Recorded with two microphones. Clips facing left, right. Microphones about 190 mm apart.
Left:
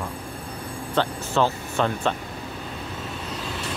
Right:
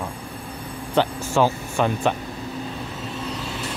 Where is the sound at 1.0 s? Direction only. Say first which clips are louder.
Right 3 dB; 10° right (ahead or behind).